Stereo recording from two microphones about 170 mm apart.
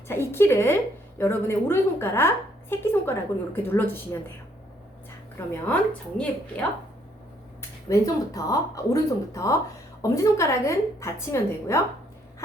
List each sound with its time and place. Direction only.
0.1 s a woman's voice: 15° left (ahead or behind)
5.6 s a woman's voice: 10° left (ahead or behind)
7.9 s a woman's voice: 20° left (ahead or behind)